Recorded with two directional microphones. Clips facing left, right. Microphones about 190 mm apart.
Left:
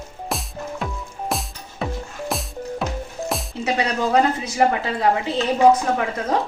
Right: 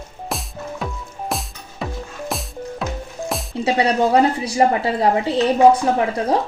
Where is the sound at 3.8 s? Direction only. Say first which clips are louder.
Right 4 dB; 30° right (ahead or behind).